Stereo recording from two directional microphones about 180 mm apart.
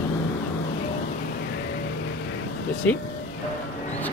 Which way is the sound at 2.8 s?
10° left (ahead or behind).